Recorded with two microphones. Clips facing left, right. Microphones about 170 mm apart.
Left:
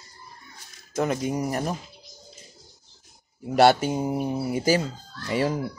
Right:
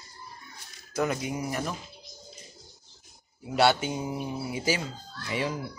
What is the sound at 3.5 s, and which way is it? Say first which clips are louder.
Speech: left 6 dB; 45° left (ahead or behind).